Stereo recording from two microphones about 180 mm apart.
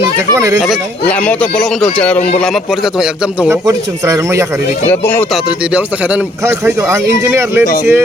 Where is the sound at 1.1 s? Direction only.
5° left (ahead or behind).